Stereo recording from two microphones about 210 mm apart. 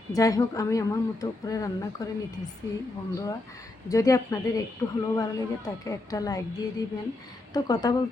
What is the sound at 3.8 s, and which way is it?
A woman's voice, 15° left (ahead or behind).